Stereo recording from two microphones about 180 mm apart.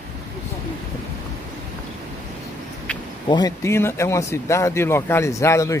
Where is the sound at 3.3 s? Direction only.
20° left (ahead or behind).